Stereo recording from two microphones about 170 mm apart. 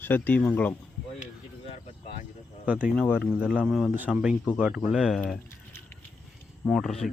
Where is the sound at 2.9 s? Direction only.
Centre (ahead or behind).